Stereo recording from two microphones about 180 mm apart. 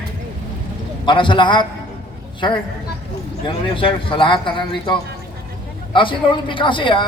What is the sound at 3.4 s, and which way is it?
A man's voice, 30° left (ahead or behind).